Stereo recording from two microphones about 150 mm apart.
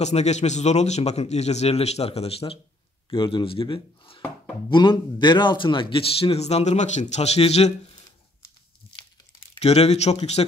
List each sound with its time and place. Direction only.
0.0 s a man's voice: 50° left (ahead or behind)
9.6 s a man's voice: 45° left (ahead or behind)